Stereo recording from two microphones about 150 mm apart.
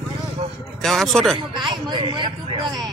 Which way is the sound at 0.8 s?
Centre (ahead or behind).